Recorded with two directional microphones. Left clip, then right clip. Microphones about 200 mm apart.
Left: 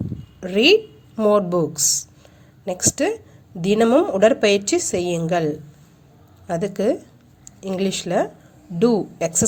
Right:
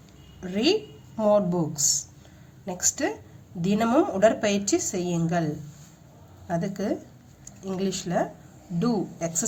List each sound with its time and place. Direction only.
0.3 s a woman's voice: 40° left (ahead or behind)